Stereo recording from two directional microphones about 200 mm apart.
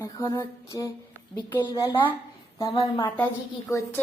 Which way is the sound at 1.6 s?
20° left (ahead or behind).